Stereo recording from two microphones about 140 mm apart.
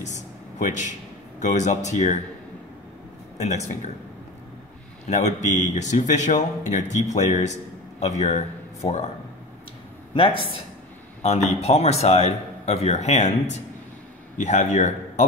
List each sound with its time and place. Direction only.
0.0 s a sound: 65° left (ahead or behind)
1.4 s speech: 55° left (ahead or behind)
3.3 s speech: 55° left (ahead or behind)
5.0 s speech: 55° left (ahead or behind)
10.1 s speech: 40° left (ahead or behind)
11.2 s a man's voice: 50° left (ahead or behind)